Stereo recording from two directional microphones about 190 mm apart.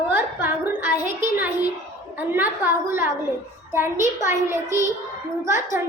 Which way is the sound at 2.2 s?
10° right (ahead or behind).